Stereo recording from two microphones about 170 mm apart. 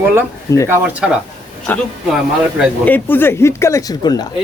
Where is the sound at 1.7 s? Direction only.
10° left (ahead or behind).